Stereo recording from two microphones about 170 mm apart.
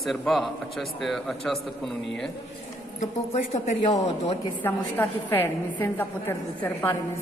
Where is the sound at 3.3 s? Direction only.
45° left (ahead or behind).